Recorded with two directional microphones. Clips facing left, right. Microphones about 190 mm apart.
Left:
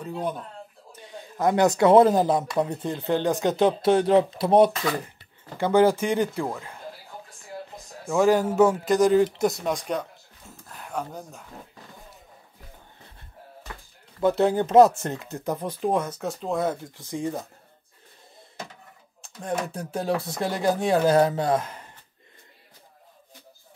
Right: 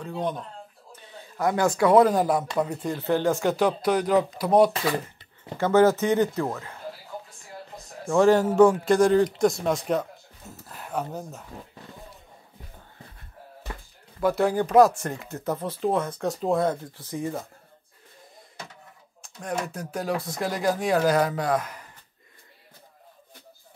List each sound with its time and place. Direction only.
0.0 s speech: 10° left (ahead or behind)
1.3 s speech: 20° left (ahead or behind)
5.6 s speech: 15° left (ahead or behind)
8.1 s speech: centre (ahead or behind)
14.2 s speech: 25° left (ahead or behind); by 16.7 s centre (ahead or behind)
16.9 s speech: 15° left (ahead or behind)
19.2 s a sound: 30° left (ahead or behind)
19.7 s speech: 30° left (ahead or behind)